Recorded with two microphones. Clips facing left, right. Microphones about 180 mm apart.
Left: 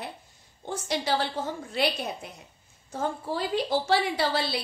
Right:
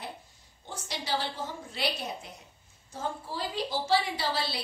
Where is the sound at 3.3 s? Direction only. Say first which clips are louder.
Left 8 dB; 60° left (ahead or behind).